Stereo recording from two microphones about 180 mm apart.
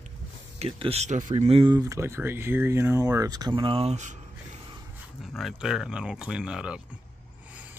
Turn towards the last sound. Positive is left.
turn(degrees=-5)  # may be behind; listen again after turning